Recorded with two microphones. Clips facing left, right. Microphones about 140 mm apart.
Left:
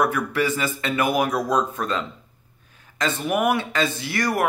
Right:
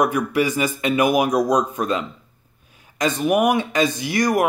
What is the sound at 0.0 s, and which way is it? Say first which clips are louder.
Speech: right 3 dB; 15° right (ahead or behind).